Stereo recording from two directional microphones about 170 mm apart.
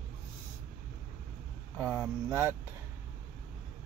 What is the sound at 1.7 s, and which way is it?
Speech, 15° right (ahead or behind).